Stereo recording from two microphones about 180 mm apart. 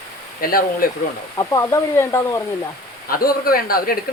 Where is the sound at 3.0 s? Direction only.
55° left (ahead or behind).